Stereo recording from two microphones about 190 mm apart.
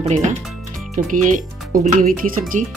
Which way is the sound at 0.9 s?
45° right (ahead or behind).